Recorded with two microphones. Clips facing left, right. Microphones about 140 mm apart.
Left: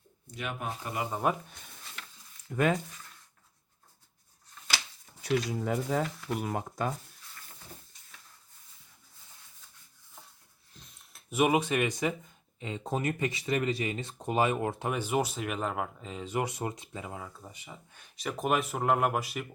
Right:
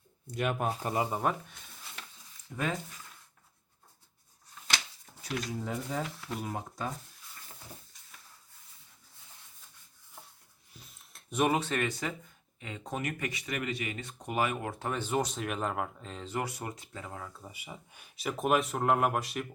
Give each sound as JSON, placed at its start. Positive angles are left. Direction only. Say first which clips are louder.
{"t": 0.3, "sound": "speech", "louder": "right 5 dB", "side_deg": -45}
{"t": 1.2, "sound": "speech", "louder": "left 6 dB", "side_deg": 10}
{"t": 2.5, "sound": "speech", "louder": "left 7 dB", "side_deg": 70}
{"t": 5.2, "sound": "speech", "louder": "left 6 dB", "side_deg": 70}
{"t": 10.8, "sound": "a sound", "louder": "right 1 dB", "side_deg": 0}
{"t": 12.5, "sound": "speech", "louder": "left 4 dB", "side_deg": 25}
{"t": 14.8, "sound": "speech", "louder": "even", "side_deg": 10}
{"t": 17.4, "sound": "speech", "louder": "right 1 dB", "side_deg": -10}